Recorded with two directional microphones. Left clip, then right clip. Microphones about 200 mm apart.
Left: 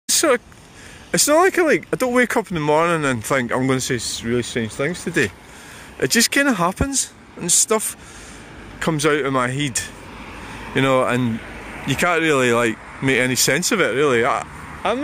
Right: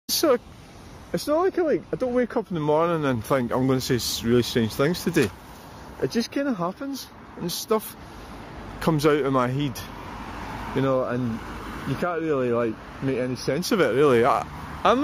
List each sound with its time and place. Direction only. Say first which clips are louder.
0.0 s a sound: left 4 dB; centre (ahead or behind)
1.1 s speech: left 8 dB; 15° left (ahead or behind)
2.5 s speech: left 2 dB; 10° left (ahead or behind)
3.9 s speech: even; 10° right (ahead or behind)
5.9 s speech: left 9 dB; 30° left (ahead or behind)
7.4 s speech: left 6 dB; 15° left (ahead or behind)
8.7 s speech: left 3 dB; centre (ahead or behind)
10.7 s speech: left 7 dB; 20° left (ahead or behind)
13.6 s speech: left 3 dB; centre (ahead or behind)
14.8 s speech: right 2 dB; 15° right (ahead or behind)